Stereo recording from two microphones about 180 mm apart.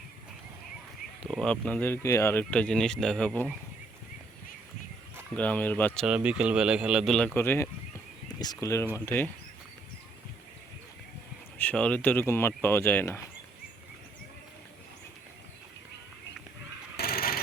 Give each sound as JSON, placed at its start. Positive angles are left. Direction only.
{"t": 1.2, "sound": "speech", "side_deg": 5}
{"t": 5.3, "sound": "speech", "side_deg": 10}
{"t": 6.1, "sound": "speech", "side_deg": -5}
{"t": 7.3, "sound": "speech", "side_deg": 15}
{"t": 11.5, "sound": "speech", "side_deg": 10}
{"t": 17.0, "sound": "wood", "side_deg": 60}